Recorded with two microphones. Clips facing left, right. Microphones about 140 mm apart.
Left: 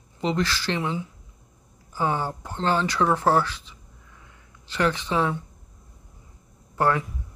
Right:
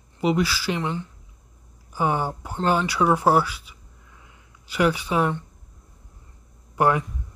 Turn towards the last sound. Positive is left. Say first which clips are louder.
# right 2 dB
turn(degrees=-15)  # may be behind; listen again after turning